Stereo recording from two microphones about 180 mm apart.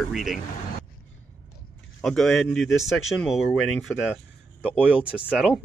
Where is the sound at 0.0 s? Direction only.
Centre (ahead or behind).